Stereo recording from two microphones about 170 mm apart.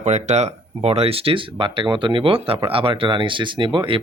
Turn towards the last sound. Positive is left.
turn(degrees=-30)  # may be behind; listen again after turning